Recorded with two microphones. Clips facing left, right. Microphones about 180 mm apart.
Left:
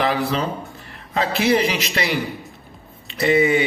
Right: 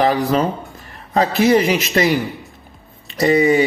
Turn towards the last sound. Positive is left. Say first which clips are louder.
# right 3 dB
turn(degrees=-40)  # may be behind; listen again after turning